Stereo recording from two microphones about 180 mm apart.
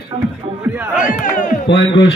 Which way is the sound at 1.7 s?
70° left (ahead or behind).